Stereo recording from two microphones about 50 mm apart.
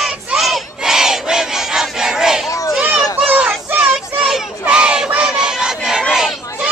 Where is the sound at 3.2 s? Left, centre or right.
Centre.